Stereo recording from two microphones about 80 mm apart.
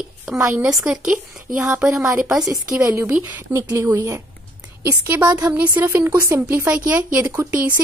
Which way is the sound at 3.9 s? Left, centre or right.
Right.